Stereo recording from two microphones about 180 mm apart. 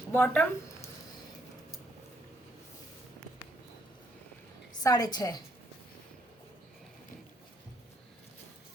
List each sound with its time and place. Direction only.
0.1 s speech: 10° left (ahead or behind)
4.8 s a woman's voice: 20° left (ahead or behind)